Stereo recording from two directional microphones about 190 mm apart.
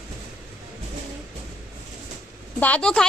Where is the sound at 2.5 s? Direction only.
10° left (ahead or behind).